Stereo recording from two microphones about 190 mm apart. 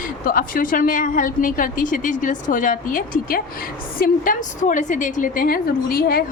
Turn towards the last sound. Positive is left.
turn(degrees=50)  # may be behind; listen again after turning